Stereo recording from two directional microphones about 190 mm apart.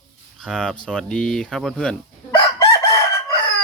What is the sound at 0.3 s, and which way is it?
Speech, centre (ahead or behind).